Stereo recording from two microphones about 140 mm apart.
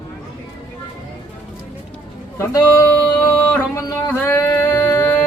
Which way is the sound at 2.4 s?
20° left (ahead or behind).